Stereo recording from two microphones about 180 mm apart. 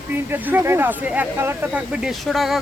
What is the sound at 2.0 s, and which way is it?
Speech, centre (ahead or behind).